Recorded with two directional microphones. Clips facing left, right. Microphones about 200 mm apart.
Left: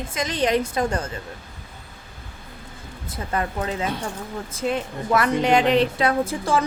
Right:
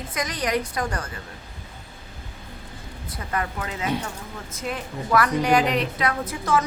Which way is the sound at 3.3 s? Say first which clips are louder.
Left 3 dB; 30° left (ahead or behind).